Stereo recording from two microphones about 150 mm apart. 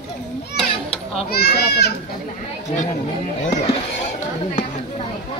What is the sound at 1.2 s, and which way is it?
Children playing, 90° left.